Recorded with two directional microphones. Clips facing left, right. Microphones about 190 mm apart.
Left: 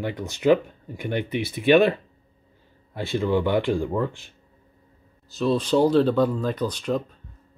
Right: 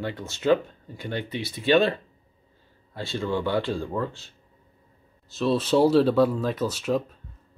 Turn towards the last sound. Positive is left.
turn(degrees=-5)  # may be behind; listen again after turning